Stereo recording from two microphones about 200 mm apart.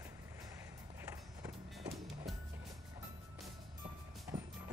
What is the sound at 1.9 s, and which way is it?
Music, centre (ahead or behind).